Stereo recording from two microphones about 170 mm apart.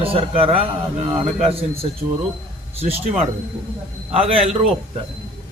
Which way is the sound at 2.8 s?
35° right (ahead or behind).